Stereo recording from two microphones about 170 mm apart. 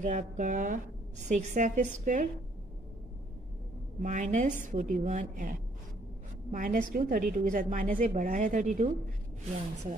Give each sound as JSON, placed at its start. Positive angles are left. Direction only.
{"t": 0.0, "sound": "a woman's voice", "side_deg": -45}
{"t": 4.0, "sound": "a woman's voice", "side_deg": -45}